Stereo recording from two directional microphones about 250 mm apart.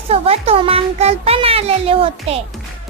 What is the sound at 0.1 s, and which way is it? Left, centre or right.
Speech, right.